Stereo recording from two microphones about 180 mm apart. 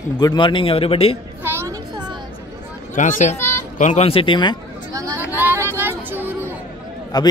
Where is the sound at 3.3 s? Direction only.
15° left (ahead or behind).